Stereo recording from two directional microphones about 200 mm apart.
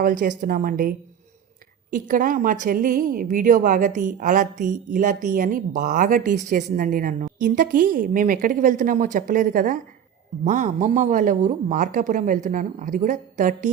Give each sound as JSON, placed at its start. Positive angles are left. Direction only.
{"t": 0.0, "sound": "a woman's voice", "side_deg": -40}